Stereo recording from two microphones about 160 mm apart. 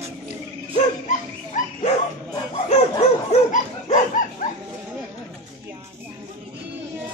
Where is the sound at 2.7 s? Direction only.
40° left (ahead or behind).